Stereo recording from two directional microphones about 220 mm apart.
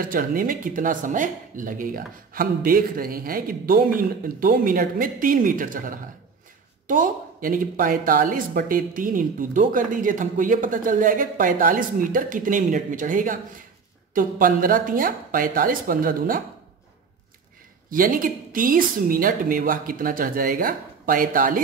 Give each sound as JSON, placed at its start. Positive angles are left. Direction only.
{"t": 0.0, "sound": "speech", "side_deg": -40}
{"t": 17.8, "sound": "speech", "side_deg": -40}